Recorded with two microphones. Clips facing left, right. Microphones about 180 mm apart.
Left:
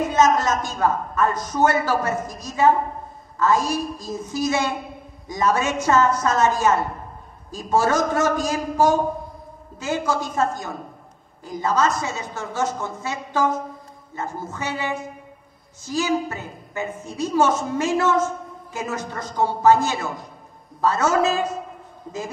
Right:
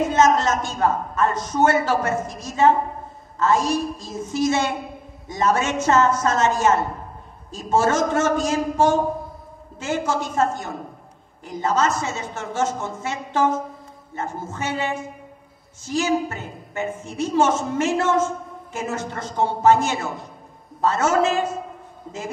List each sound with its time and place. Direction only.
0.0 s a woman's voice: 25° right (ahead or behind)